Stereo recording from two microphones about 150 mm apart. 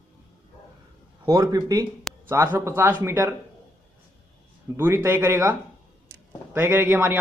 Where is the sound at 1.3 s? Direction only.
25° right (ahead or behind).